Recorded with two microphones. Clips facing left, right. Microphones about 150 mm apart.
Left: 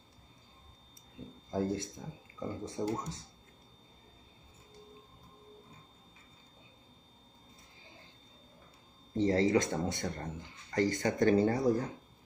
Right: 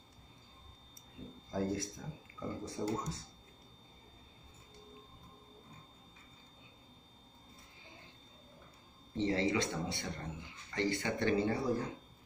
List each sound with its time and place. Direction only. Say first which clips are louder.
1.5 s speech: left 3 dB; 25° left (ahead or behind)
9.1 s speech: left 5 dB; 40° left (ahead or behind)